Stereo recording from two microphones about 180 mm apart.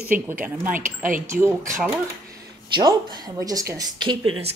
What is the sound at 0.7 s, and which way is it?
Speech, 50° right (ahead or behind).